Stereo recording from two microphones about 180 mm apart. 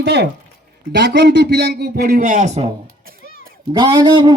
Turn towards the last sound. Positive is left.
turn(degrees=-25)  # may be behind; listen again after turning